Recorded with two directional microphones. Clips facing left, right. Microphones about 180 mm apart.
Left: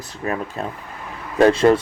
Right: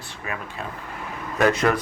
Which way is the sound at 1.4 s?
30° left (ahead or behind).